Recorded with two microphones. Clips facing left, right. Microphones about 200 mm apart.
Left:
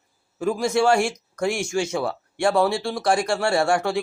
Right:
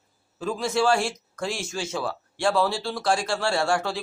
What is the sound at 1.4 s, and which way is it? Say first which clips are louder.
Speech: left 7 dB; 70° left (ahead or behind).